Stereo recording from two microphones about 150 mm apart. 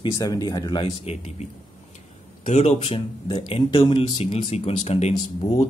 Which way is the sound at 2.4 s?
50° left (ahead or behind).